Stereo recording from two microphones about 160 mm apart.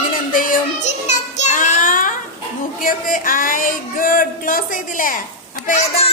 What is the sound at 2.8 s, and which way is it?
Speech, 60° left (ahead or behind).